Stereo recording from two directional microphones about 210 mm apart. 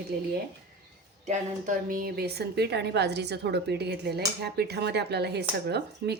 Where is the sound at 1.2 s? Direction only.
40° right (ahead or behind).